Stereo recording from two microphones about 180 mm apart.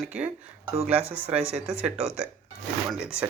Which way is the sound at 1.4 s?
35° right (ahead or behind).